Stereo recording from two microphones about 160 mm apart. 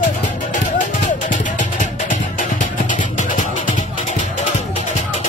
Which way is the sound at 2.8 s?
50° left (ahead or behind).